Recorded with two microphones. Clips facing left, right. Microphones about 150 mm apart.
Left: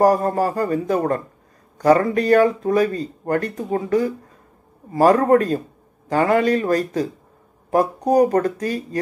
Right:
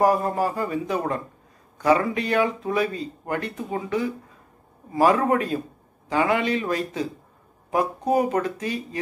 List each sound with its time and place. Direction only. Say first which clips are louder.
0.0 s speech: left 4 dB; 40° left (ahead or behind)